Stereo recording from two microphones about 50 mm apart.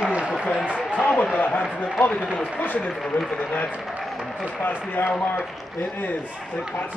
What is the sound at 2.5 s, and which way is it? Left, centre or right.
A man's voice, left.